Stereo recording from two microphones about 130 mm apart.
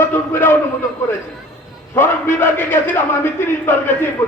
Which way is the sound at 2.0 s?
15° left (ahead or behind).